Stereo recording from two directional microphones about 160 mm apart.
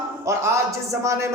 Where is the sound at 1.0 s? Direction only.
20° right (ahead or behind).